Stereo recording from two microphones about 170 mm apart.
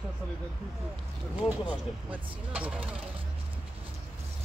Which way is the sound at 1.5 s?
10° right (ahead or behind).